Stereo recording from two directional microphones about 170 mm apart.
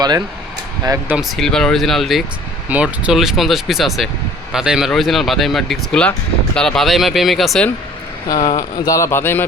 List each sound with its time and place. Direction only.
0.9 s speech: 10° right (ahead or behind)
1.4 s speech: 5° left (ahead or behind)
8.5 s speech: 20° left (ahead or behind)